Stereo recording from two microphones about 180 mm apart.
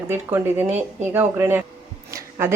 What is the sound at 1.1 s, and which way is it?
Speech, 15° right (ahead or behind).